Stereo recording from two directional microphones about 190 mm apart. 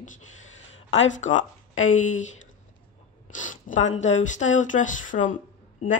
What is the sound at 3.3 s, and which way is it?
Speech, 40° left (ahead or behind).